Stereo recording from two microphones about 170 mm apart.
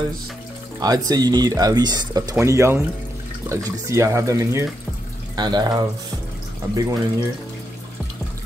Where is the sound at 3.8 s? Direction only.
15° right (ahead or behind).